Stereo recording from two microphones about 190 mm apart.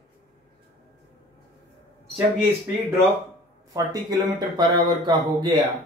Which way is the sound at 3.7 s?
20° right (ahead or behind).